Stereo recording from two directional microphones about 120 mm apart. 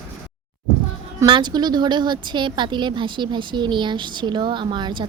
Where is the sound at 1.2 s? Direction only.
40° right (ahead or behind).